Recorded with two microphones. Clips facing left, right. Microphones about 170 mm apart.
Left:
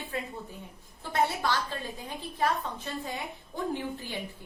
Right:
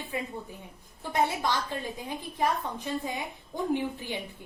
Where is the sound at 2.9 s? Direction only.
15° right (ahead or behind).